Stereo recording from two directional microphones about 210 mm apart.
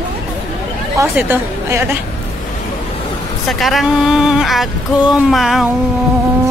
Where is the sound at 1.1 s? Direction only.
10° right (ahead or behind).